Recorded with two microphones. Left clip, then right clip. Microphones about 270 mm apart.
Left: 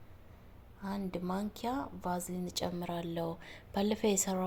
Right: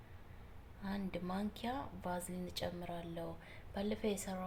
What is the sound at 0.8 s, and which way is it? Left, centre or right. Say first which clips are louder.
A woman's voice: left 5 dB; centre.